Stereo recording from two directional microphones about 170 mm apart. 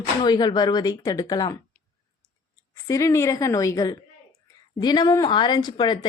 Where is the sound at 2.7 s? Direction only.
20° left (ahead or behind).